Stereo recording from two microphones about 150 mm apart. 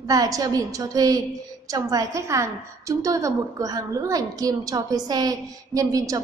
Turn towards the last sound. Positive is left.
turn(degrees=-20)  # may be behind; listen again after turning